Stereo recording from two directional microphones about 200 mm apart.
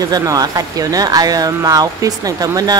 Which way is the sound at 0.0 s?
20° right (ahead or behind).